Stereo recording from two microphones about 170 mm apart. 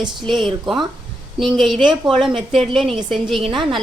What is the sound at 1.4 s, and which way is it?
A woman's voice, centre (ahead or behind).